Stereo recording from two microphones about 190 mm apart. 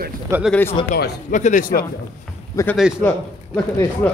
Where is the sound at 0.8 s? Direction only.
50° left (ahead or behind).